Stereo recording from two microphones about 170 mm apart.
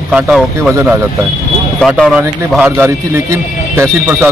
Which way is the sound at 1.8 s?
Centre (ahead or behind).